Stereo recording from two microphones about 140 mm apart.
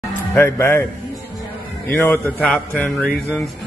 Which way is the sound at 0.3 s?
20° left (ahead or behind).